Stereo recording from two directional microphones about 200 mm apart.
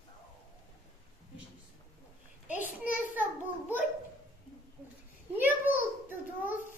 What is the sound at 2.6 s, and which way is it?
Speech, 40° left (ahead or behind).